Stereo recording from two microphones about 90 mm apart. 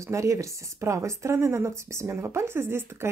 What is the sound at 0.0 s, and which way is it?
Speech, 35° right (ahead or behind).